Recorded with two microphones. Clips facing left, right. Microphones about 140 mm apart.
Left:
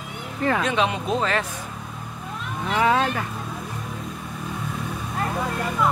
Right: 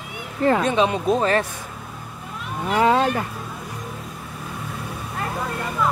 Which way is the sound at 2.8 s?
15° right (ahead or behind).